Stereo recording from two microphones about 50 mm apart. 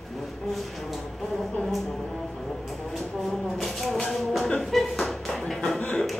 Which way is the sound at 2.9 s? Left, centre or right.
Centre.